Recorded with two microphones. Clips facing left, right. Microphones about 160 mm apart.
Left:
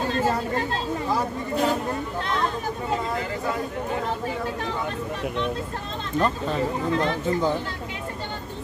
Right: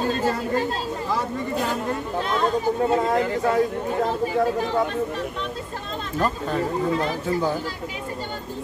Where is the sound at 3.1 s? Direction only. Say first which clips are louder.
Right 6 dB; 70° right (ahead or behind).